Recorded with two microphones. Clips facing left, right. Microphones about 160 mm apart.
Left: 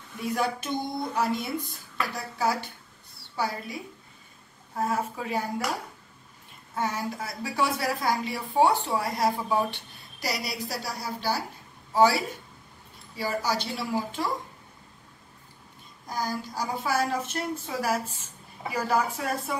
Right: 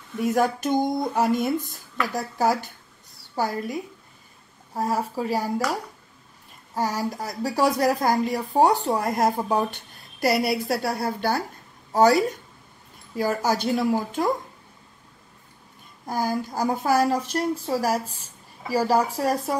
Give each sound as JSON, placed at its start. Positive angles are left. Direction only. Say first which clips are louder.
{"t": 0.2, "sound": "speech", "louder": "right 6 dB", "side_deg": -45}
{"t": 5.1, "sound": "a woman's voice", "louder": "right 5 dB", "side_deg": -35}
{"t": 6.7, "sound": "a woman's voice", "louder": "right 4 dB", "side_deg": -40}
{"t": 10.2, "sound": "a woman's voice", "louder": "right 10 dB", "side_deg": -55}
{"t": 11.9, "sound": "speech", "louder": "right 4 dB", "side_deg": -45}
{"t": 16.1, "sound": "a woman's voice", "louder": "right 6 dB", "side_deg": -55}